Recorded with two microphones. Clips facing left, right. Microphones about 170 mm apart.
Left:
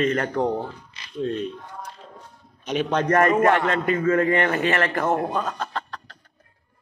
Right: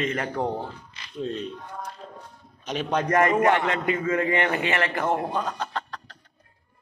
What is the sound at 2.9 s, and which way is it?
A man's voice, 15° right (ahead or behind).